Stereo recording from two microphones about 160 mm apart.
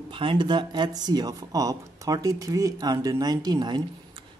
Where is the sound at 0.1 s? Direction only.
30° right (ahead or behind).